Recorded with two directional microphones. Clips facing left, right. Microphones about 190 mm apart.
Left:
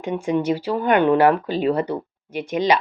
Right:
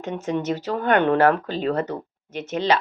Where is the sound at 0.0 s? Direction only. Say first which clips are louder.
Left 4 dB; 10° left (ahead or behind).